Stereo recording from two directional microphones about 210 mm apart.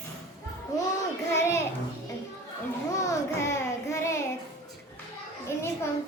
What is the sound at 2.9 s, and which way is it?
A child's voice, 15° left (ahead or behind).